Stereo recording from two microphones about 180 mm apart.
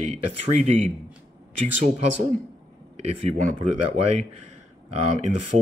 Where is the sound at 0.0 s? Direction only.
40° right (ahead or behind).